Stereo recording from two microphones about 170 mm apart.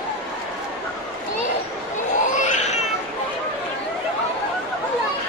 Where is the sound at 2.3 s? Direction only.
45° left (ahead or behind).